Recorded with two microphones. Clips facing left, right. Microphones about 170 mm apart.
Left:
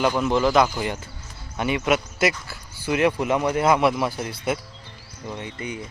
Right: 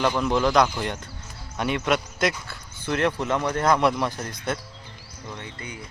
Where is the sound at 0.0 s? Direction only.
5° left (ahead or behind).